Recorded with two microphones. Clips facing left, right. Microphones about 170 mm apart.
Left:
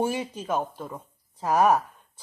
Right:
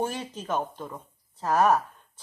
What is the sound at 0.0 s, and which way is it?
A woman's voice, 10° left (ahead or behind).